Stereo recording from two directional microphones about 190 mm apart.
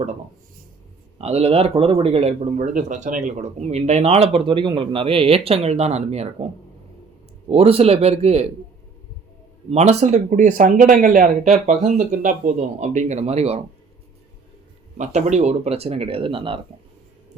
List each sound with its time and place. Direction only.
1.2 s speech: 30° right (ahead or behind)
9.6 s speech: 35° right (ahead or behind)
14.9 s speech: 35° right (ahead or behind)